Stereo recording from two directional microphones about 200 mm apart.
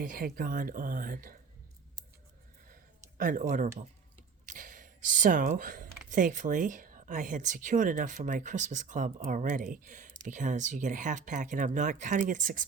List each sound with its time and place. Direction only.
0.0 s speech: 45° right (ahead or behind)
3.2 s speech: 40° right (ahead or behind)